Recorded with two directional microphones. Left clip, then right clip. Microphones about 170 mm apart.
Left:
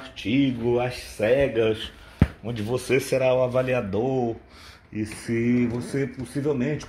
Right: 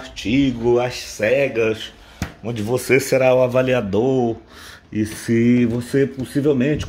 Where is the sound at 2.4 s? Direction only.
20° right (ahead or behind).